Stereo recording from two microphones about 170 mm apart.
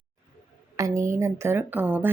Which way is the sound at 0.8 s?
15° right (ahead or behind).